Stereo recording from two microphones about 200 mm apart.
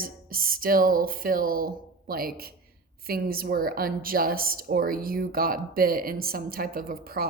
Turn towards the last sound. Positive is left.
turn(degrees=-45)  # may be behind; listen again after turning